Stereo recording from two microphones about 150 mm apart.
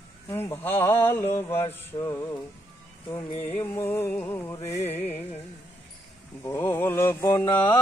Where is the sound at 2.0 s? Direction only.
20° left (ahead or behind).